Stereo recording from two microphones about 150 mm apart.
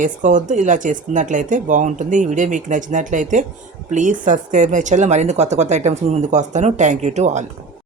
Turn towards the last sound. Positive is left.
turn(degrees=-50)  # may be behind; listen again after turning